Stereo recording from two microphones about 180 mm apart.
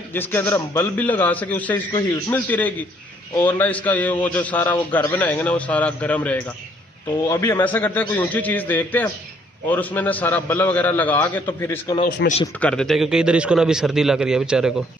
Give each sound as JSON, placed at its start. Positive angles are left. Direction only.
{"t": 0.1, "sound": "a man's voice", "side_deg": 10}
{"t": 12.2, "sound": "speech", "side_deg": 80}
{"t": 12.5, "sound": "a man's voice", "side_deg": 5}